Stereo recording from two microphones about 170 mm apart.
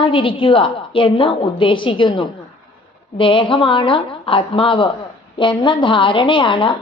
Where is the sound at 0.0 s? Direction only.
30° left (ahead or behind).